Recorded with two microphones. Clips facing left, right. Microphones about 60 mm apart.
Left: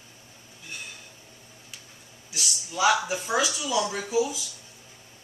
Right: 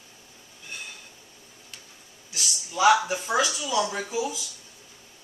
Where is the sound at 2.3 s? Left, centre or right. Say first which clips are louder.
Right 2 dB; centre.